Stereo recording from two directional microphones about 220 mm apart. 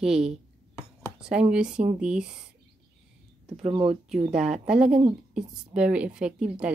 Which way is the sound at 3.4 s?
25° right (ahead or behind).